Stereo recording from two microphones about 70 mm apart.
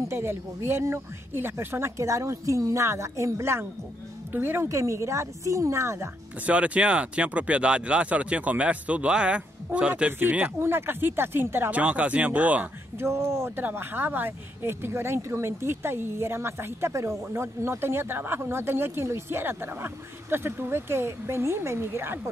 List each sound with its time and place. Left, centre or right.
0.1 s speech: right
4.6 s speech: right
6.4 s speech: centre
10.1 s speech: right
11.7 s speech: centre
13.0 s speech: right